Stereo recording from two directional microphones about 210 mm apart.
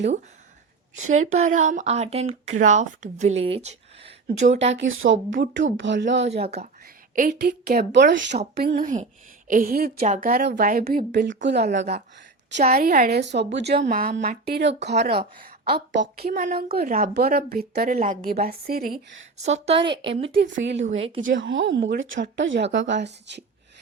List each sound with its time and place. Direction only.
1.1 s speech: 35° right (ahead or behind)
4.7 s speech: 65° right (ahead or behind)
6.2 s a woman's voice: 30° right (ahead or behind)
7.2 s a woman's voice: 45° right (ahead or behind)
8.7 s a woman's voice: 35° right (ahead or behind); by 11.9 s 55° right (ahead or behind)
12.5 s a woman's voice: 45° right (ahead or behind)
19.5 s a woman's voice: 30° right (ahead or behind)
20.4 s speech: 55° right (ahead or behind)
20.8 s speech: 35° right (ahead or behind)
21.3 s speech: 65° right (ahead or behind)